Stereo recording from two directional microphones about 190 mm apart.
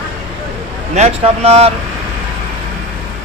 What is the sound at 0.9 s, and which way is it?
Speech, 35° right (ahead or behind).